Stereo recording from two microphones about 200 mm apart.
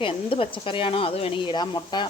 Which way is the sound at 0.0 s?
25° left (ahead or behind).